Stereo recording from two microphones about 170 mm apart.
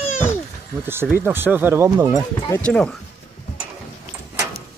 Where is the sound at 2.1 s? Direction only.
20° left (ahead or behind).